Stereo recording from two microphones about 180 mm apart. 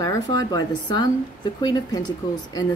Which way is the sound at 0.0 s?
20° left (ahead or behind).